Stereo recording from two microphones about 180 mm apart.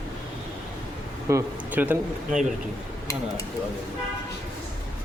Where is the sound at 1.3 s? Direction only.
15° right (ahead or behind).